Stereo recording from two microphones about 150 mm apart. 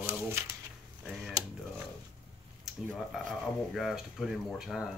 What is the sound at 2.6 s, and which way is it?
Speech, centre (ahead or behind).